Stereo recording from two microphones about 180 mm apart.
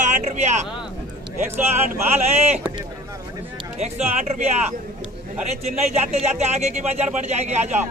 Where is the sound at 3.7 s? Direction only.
40° right (ahead or behind).